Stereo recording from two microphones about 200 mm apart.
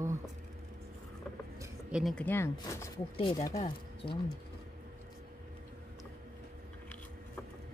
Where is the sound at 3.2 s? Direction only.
25° left (ahead or behind).